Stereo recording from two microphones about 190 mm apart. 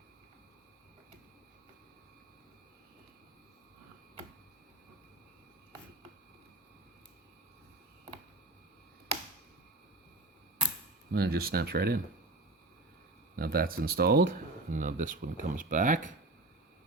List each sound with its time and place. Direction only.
11.1 s speech: 55° right (ahead or behind)
13.3 s speech: 50° right (ahead or behind)